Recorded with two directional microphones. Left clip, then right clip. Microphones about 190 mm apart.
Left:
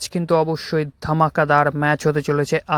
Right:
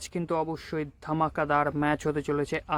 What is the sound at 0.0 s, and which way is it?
Speech, 35° left (ahead or behind).